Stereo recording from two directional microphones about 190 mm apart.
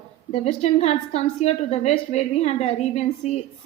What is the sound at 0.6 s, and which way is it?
A woman's voice, 35° left (ahead or behind).